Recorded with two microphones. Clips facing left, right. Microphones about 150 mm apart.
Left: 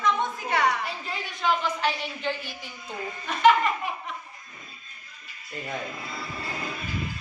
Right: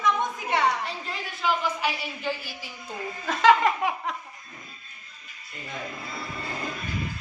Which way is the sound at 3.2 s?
90° right.